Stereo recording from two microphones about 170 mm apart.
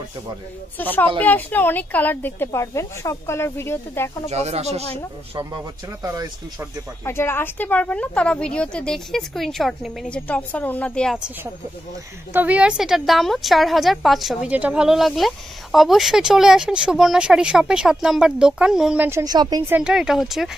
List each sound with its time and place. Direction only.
0.7 s a woman's voice: 10° left (ahead or behind)
4.3 s speech: 40° right (ahead or behind)
6.0 s speech: 20° right (ahead or behind)
7.1 s a woman's voice: 15° left (ahead or behind); by 19.0 s 5° right (ahead or behind)
19.0 s speech: 20° right (ahead or behind)
19.6 s a woman's voice: 10° right (ahead or behind)